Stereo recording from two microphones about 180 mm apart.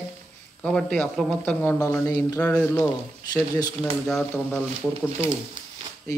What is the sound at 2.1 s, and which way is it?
Speech, 20° left (ahead or behind).